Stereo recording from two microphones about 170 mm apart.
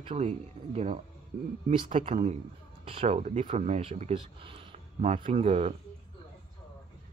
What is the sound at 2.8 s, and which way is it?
Speech, 35° right (ahead or behind).